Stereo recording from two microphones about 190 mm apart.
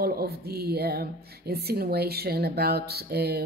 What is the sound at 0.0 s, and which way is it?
A woman's voice, 55° right (ahead or behind).